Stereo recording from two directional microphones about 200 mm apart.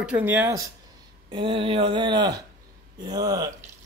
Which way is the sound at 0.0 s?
5° right (ahead or behind).